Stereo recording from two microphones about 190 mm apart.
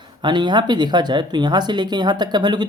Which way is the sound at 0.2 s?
25° right (ahead or behind).